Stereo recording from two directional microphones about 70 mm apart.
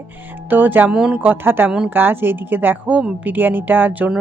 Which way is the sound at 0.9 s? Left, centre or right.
Centre.